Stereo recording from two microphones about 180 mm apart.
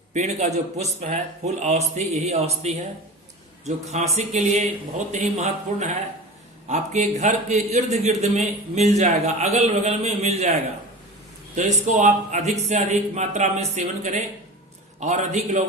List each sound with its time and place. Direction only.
0.1 s a man's voice: 40° right (ahead or behind)
11.5 s a man's voice: 45° right (ahead or behind)